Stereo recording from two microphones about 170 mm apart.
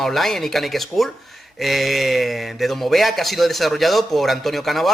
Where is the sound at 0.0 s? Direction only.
Centre (ahead or behind).